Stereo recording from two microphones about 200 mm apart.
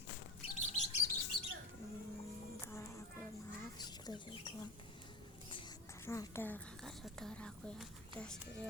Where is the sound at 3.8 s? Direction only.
20° left (ahead or behind).